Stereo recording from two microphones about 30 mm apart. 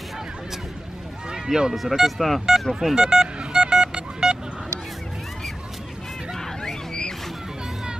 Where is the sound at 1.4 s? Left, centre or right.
Right.